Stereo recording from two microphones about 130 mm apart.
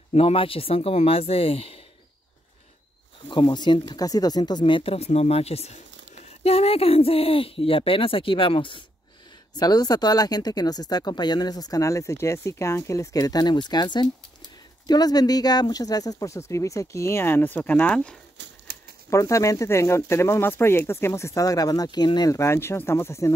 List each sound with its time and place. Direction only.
0.1 s speech: 45° left (ahead or behind)
3.3 s speech: 35° left (ahead or behind)
9.6 s speech: 30° left (ahead or behind); by 18.1 s 10° left (ahead or behind)
19.0 s speech: 25° left (ahead or behind)